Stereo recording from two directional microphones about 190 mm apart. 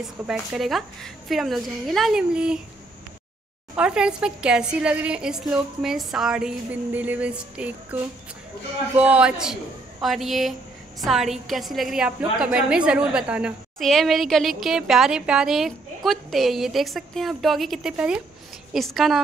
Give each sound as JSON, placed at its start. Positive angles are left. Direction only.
{"t": 0.3, "sound": "a woman's voice", "side_deg": 0}
{"t": 3.7, "sound": "a woman's voice", "side_deg": -5}